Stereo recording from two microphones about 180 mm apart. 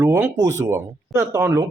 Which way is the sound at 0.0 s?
15° right (ahead or behind).